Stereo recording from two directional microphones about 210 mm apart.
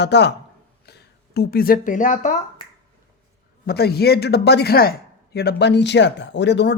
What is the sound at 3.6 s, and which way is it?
A woman's voice, 50° left (ahead or behind).